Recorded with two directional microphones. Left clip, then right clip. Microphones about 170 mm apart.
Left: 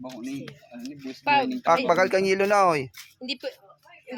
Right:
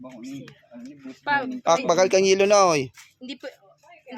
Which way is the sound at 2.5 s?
45° right (ahead or behind).